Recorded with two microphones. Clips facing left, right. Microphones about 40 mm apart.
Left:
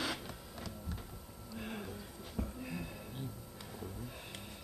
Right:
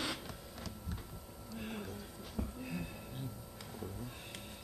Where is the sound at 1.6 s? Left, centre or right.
Centre.